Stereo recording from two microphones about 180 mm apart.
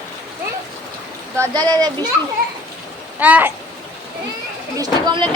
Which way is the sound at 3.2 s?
10° right (ahead or behind).